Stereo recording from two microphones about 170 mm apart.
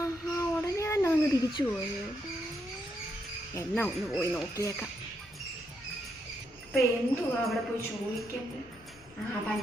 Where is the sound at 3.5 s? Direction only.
10° left (ahead or behind).